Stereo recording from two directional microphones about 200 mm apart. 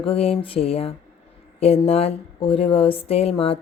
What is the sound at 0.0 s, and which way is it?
Speech, 30° left (ahead or behind).